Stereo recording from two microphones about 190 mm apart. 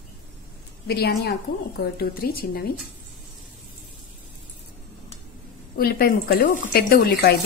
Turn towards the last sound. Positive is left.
turn(degrees=55)  # may be behind; listen again after turning